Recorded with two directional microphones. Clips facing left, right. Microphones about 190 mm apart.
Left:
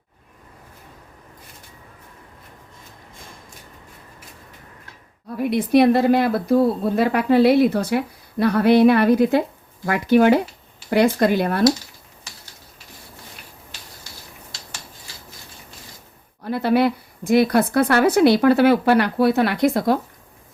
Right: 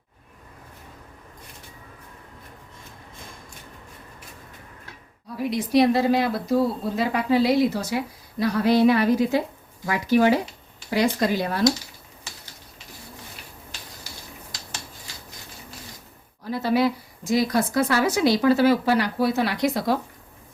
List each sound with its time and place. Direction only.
5.4 s a woman's voice: 55° left (ahead or behind)
16.4 s a woman's voice: 60° left (ahead or behind)